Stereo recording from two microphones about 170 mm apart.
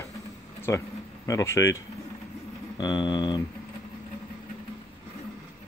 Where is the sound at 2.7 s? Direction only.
25° left (ahead or behind).